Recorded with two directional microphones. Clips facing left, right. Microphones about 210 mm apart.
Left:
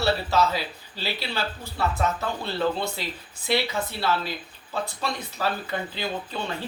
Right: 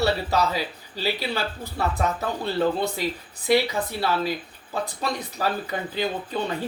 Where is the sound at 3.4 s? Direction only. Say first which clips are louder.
Right 5 dB; 40° right (ahead or behind).